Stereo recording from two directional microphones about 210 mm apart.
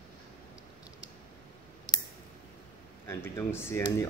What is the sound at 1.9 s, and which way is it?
Clicking, 20° left (ahead or behind).